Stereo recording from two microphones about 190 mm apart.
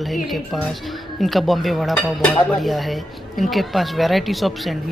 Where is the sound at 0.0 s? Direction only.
Centre (ahead or behind).